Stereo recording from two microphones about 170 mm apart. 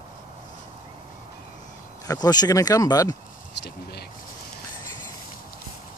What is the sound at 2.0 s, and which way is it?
Speech, 25° left (ahead or behind).